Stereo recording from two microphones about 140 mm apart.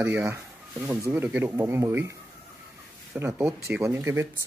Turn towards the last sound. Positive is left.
turn(degrees=-20)  # may be behind; listen again after turning